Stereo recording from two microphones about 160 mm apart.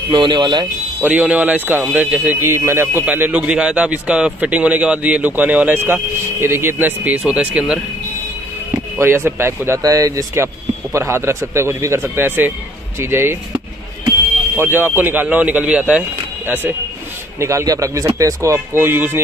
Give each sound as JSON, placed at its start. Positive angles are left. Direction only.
{"t": 0.1, "sound": "speech", "side_deg": -30}
{"t": 1.0, "sound": "speech", "side_deg": -10}
{"t": 8.9, "sound": "speech", "side_deg": -15}
{"t": 14.6, "sound": "speech", "side_deg": -10}
{"t": 17.4, "sound": "speech", "side_deg": -20}